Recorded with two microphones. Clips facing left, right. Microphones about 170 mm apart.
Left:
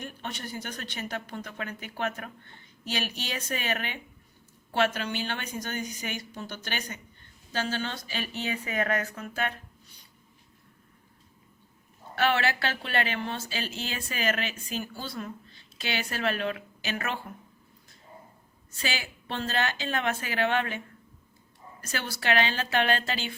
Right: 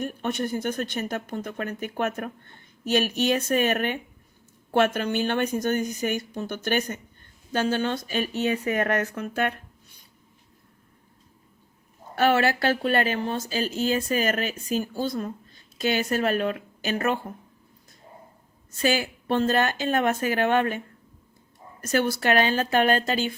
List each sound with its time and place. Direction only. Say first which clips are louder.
0.0 s speech: right 10 dB; 50° right (ahead or behind)
9.2 s speech: right 7 dB; 65° right (ahead or behind)
12.1 s speech: right 5 dB; 45° right (ahead or behind)
18.7 s speech: right 10 dB; 45° right (ahead or behind)